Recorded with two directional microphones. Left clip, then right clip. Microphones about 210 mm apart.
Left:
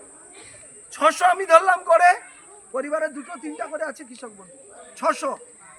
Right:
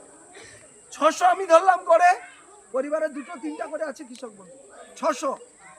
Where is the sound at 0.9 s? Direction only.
10° left (ahead or behind).